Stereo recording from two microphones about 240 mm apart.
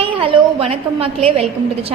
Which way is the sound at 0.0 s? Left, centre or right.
Right.